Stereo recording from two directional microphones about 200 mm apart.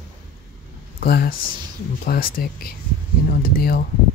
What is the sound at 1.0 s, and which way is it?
Speech, 50° left (ahead or behind).